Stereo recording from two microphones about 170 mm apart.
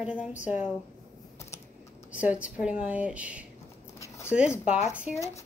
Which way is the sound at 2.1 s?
5° right (ahead or behind).